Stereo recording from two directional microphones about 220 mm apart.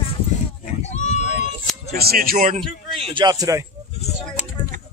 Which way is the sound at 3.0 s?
20° right (ahead or behind).